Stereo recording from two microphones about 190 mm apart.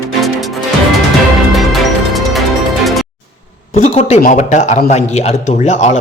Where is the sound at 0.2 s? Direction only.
Centre (ahead or behind).